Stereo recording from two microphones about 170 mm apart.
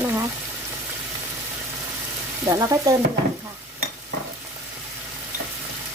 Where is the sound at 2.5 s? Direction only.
20° right (ahead or behind).